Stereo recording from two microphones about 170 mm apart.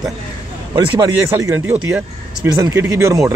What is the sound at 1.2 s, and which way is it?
Speech, 15° right (ahead or behind).